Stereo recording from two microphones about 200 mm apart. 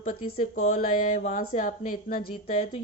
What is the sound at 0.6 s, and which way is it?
A woman's voice, 40° left (ahead or behind).